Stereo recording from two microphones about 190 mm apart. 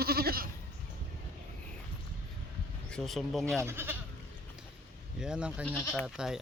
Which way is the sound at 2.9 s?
Centre (ahead or behind).